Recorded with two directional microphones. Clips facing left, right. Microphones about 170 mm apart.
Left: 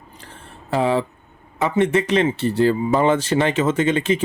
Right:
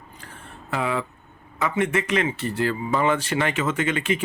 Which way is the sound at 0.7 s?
30° left (ahead or behind).